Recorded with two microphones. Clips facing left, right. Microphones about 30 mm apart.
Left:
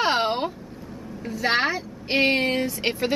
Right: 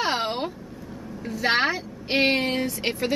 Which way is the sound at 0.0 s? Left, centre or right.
Centre.